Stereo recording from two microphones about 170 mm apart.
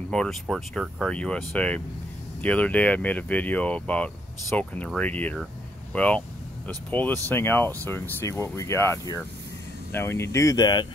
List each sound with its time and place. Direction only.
0.1 s speech: centre (ahead or behind); by 10.9 s 25° left (ahead or behind)